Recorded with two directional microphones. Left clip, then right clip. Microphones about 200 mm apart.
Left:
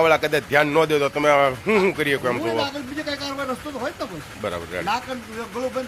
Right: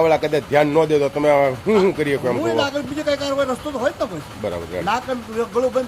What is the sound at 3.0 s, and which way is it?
Speech, 25° right (ahead or behind).